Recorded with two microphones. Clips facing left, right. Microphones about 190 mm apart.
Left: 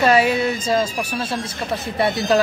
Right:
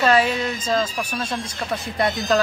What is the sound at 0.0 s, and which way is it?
A woman's voice, 10° left (ahead or behind).